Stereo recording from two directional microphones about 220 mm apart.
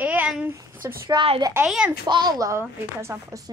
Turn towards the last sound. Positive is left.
turn(degrees=-15)  # may be behind; listen again after turning